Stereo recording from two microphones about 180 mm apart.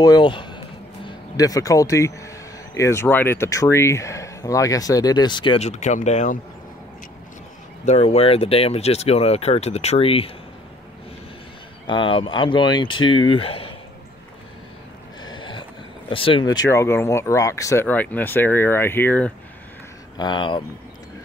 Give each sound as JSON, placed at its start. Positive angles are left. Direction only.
{"t": 0.0, "sound": "speech", "side_deg": 25}
{"t": 7.8, "sound": "speech", "side_deg": 35}
{"t": 11.9, "sound": "speech", "side_deg": 30}
{"t": 15.2, "sound": "a sound", "side_deg": 25}
{"t": 16.1, "sound": "speech", "side_deg": 30}
{"t": 16.5, "sound": "speech", "side_deg": 15}
{"t": 20.2, "sound": "speech", "side_deg": 25}